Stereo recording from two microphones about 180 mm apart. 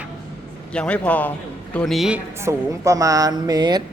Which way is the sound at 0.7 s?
5° left (ahead or behind).